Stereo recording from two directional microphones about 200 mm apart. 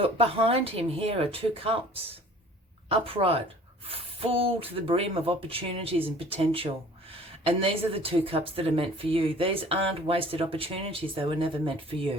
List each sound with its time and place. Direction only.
0.0 s speech: 30° right (ahead or behind)
2.9 s speech: 30° right (ahead or behind)